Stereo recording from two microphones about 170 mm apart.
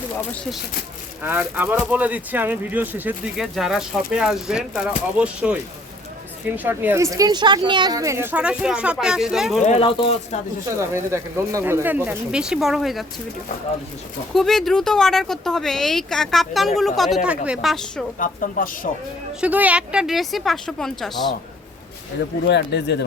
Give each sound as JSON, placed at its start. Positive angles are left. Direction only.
{"t": 1.2, "sound": "speech", "side_deg": -10}
{"t": 9.6, "sound": "speech", "side_deg": 35}
{"t": 10.7, "sound": "speech", "side_deg": -15}
{"t": 14.3, "sound": "speech", "side_deg": 0}
{"t": 18.2, "sound": "speech", "side_deg": 55}
{"t": 19.4, "sound": "speech", "side_deg": -10}
{"t": 22.4, "sound": "speech", "side_deg": 85}